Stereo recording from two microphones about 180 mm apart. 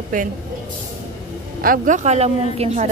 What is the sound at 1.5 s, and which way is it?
Speech, 50° right (ahead or behind).